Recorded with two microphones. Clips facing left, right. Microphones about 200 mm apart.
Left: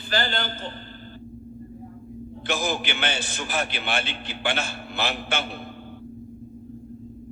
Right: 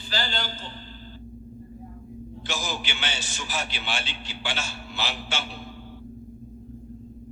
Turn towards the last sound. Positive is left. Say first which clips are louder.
# left 4 dB
turn(degrees=55)  # may be behind; listen again after turning